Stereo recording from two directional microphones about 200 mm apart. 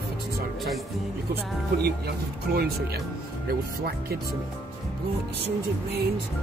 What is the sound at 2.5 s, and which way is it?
Speech, 50° right (ahead or behind).